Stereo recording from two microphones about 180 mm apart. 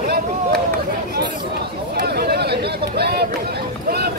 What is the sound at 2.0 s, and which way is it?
Speech, 60° right (ahead or behind).